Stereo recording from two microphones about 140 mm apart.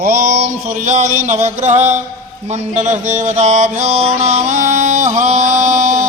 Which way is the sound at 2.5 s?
55° right (ahead or behind).